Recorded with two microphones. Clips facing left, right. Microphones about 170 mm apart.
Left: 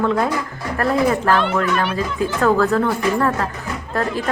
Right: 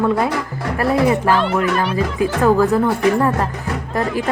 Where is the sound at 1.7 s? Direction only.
35° right (ahead or behind).